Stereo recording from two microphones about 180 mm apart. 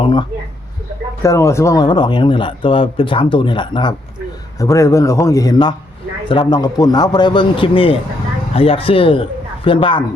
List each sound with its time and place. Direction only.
0.0 s speech: 25° left (ahead or behind)
1.2 s a man's voice: 15° left (ahead or behind)